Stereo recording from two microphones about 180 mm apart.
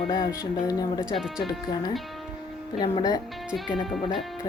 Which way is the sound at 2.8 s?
20° left (ahead or behind).